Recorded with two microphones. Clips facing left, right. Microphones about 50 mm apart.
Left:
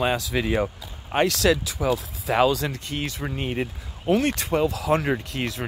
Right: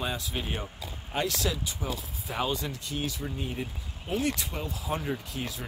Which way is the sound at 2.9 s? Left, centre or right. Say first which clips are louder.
Left 4 dB; left.